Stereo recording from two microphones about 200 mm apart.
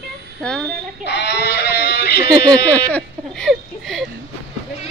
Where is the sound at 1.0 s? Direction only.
60° left (ahead or behind).